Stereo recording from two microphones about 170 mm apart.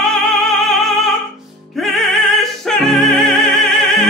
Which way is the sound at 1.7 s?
Centre (ahead or behind).